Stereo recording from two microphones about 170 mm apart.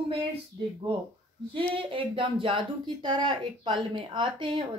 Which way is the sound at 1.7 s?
30° right (ahead or behind).